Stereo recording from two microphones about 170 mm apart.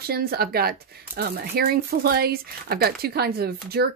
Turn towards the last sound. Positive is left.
turn(degrees=-65)  # may be behind; listen again after turning